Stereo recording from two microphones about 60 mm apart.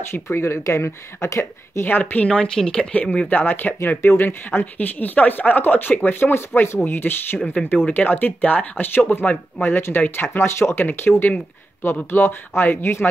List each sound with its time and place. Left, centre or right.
0.1 s speech: left
1.9 s speech: left
2.2 s speech: centre
9.6 s speech: left